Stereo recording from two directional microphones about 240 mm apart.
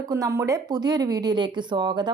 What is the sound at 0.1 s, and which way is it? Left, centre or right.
Speech, centre.